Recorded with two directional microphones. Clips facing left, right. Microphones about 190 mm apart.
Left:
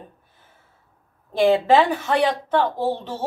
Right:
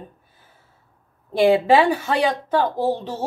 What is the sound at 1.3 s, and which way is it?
A woman's voice, 15° right (ahead or behind).